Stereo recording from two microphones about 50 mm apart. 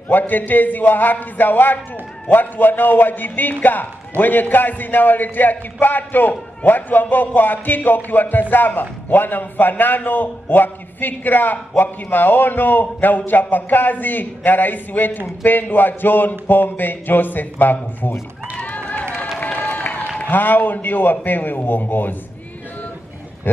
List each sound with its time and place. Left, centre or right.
0.3 s a man's voice: left
18.6 s run: left
19.4 s applause: left
20.2 s a man's voice: left
23.5 s a sound: left